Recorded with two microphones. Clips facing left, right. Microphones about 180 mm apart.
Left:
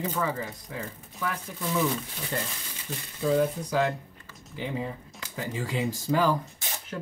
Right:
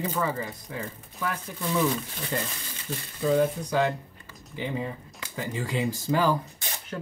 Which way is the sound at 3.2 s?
Centre (ahead or behind).